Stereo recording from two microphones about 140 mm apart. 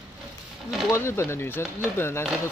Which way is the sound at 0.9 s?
20° left (ahead or behind).